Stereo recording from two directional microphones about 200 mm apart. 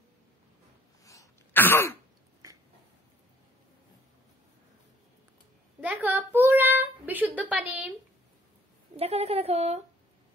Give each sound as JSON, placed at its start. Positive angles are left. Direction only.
{"t": 1.0, "sound": "throat clearing", "side_deg": 15}
{"t": 6.0, "sound": "child singing", "side_deg": -10}
{"t": 8.9, "sound": "a sound", "side_deg": -30}